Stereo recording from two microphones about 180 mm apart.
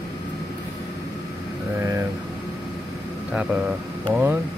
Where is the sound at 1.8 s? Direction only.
15° right (ahead or behind).